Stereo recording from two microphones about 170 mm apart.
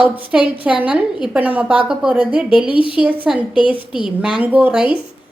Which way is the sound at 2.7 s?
30° left (ahead or behind).